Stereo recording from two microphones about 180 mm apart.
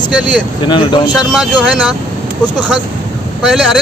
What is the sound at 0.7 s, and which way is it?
Speech, 25° left (ahead or behind).